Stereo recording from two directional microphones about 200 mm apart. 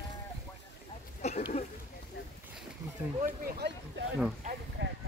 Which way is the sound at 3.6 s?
55° right (ahead or behind).